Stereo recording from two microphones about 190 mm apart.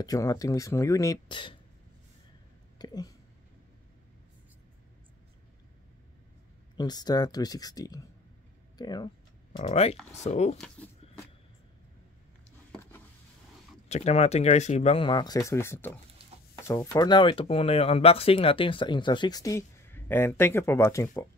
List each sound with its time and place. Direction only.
0.0 s speech: 20° left (ahead or behind)
2.8 s speech: 20° left (ahead or behind)
6.8 s speech: 20° left (ahead or behind)
9.6 s speech: 30° left (ahead or behind)
13.8 s speech: 35° left (ahead or behind); by 21.3 s 15° left (ahead or behind)